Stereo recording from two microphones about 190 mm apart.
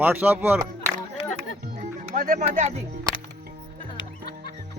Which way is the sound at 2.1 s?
50° right (ahead or behind).